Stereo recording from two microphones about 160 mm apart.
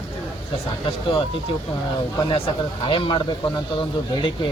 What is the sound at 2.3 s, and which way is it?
Speech, 35° left (ahead or behind).